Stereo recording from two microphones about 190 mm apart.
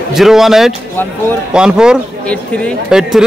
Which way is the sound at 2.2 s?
5° left (ahead or behind).